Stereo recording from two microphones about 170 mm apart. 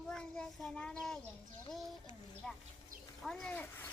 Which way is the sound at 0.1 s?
5° left (ahead or behind).